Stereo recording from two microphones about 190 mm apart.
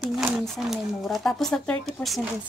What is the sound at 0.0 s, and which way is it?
Speech, centre (ahead or behind).